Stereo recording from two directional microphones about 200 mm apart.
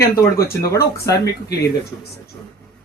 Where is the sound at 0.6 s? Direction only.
15° left (ahead or behind).